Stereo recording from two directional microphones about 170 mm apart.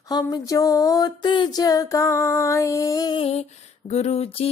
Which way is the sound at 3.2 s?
40° left (ahead or behind).